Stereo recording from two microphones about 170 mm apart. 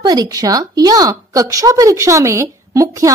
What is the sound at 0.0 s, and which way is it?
A woman's voice, 25° right (ahead or behind).